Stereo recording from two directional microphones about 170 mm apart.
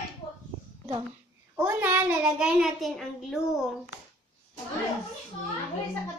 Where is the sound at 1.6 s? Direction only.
15° right (ahead or behind).